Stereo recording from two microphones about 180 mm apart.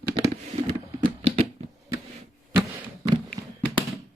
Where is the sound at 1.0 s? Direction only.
30° right (ahead or behind).